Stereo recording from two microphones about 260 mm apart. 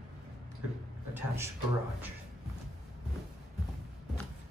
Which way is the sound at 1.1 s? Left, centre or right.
Centre.